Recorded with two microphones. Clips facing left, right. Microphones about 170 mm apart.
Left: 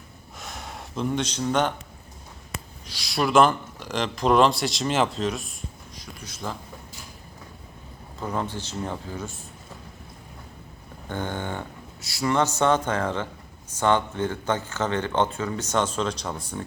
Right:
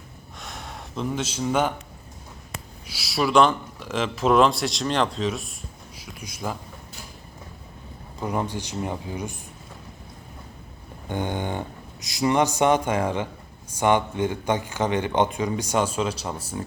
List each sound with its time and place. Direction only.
0.3 s gasp: centre (ahead or behind)
2.8 s a man's voice: 5° right (ahead or behind)
8.2 s speech: 15° right (ahead or behind)
11.1 s speech: 15° right (ahead or behind)